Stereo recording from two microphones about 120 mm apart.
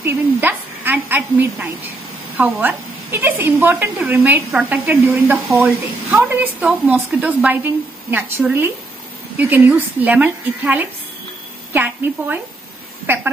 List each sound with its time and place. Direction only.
0.0 s a woman's voice: 15° right (ahead or behind)